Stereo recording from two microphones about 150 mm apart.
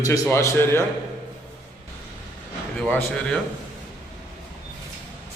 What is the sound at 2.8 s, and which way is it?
Speech, 5° left (ahead or behind).